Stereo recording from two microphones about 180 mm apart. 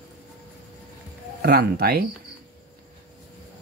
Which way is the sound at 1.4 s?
60° right (ahead or behind).